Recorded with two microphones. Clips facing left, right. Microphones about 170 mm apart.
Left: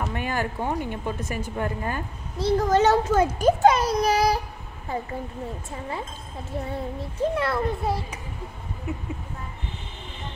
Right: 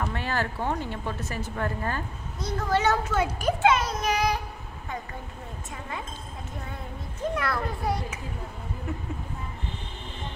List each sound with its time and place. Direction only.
0.0 s speech: 15° left (ahead or behind)
2.3 s a child's voice: 35° left (ahead or behind)
5.7 s a child's voice: 35° left (ahead or behind)